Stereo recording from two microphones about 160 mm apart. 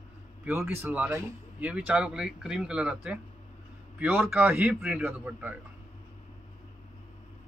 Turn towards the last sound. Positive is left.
turn(degrees=-10)  # may be behind; listen again after turning